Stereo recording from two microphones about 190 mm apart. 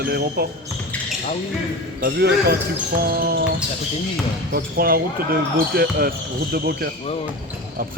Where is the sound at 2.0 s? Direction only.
55° right (ahead or behind).